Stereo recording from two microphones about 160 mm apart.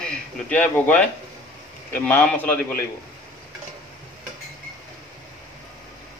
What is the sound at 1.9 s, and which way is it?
Speech, 10° left (ahead or behind).